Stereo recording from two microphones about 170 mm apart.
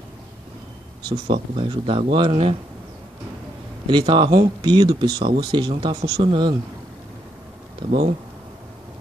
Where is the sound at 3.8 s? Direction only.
30° right (ahead or behind).